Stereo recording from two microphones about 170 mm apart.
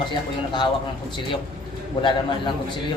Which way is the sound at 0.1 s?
25° left (ahead or behind).